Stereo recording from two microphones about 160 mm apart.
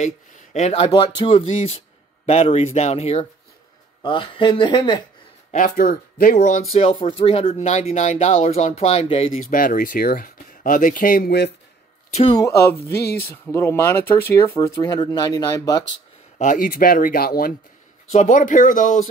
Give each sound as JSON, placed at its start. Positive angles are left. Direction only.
{"t": 0.0, "sound": "speech", "side_deg": 45}
{"t": 5.5, "sound": "speech", "side_deg": 60}
{"t": 7.1, "sound": "speech", "side_deg": 35}
{"t": 9.4, "sound": "speech", "side_deg": 60}
{"t": 12.1, "sound": "speech", "side_deg": 35}
{"t": 12.4, "sound": "speech", "side_deg": 20}
{"t": 16.3, "sound": "speech", "side_deg": 55}
{"t": 18.1, "sound": "speech", "side_deg": 50}